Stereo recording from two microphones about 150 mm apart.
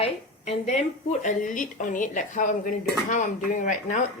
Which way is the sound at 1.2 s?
55° left (ahead or behind).